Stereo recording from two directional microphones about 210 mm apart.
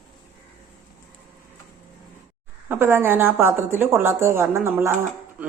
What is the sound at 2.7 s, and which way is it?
Speech, 10° right (ahead or behind).